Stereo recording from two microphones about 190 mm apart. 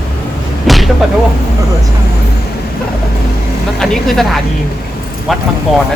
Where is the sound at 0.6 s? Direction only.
Centre (ahead or behind).